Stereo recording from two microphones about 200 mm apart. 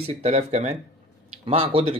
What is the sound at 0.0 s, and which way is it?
Speech, 30° right (ahead or behind).